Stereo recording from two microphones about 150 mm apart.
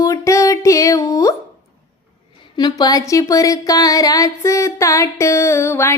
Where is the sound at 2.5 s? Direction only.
25° left (ahead or behind).